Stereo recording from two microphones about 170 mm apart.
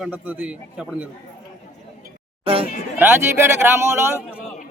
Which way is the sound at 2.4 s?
35° right (ahead or behind).